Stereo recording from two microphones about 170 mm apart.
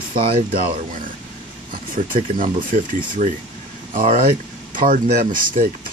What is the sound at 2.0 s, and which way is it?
Speech, 45° right (ahead or behind).